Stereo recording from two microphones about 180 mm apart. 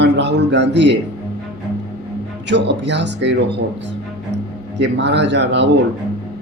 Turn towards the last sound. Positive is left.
turn(degrees=-75)  # may be behind; listen again after turning